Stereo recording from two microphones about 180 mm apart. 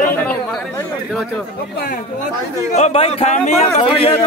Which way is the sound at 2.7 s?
35° left (ahead or behind).